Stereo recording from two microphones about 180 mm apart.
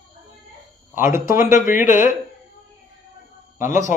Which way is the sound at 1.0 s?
15° right (ahead or behind).